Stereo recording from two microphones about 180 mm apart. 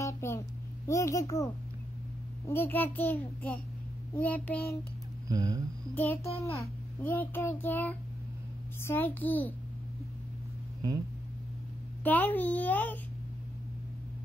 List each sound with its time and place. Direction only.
0.0 s a sound: 15° left (ahead or behind)
0.8 s a child's voice: 15° left (ahead or behind)
5.3 s speech: 20° right (ahead or behind)
5.9 s a child's voice: 10° left (ahead or behind)
12.0 s a child's voice: 10° left (ahead or behind)